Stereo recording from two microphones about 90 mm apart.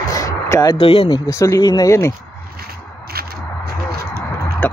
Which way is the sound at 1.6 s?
50° left (ahead or behind).